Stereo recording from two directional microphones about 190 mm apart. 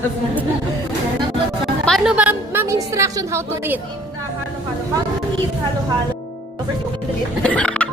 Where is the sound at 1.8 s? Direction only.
Centre (ahead or behind).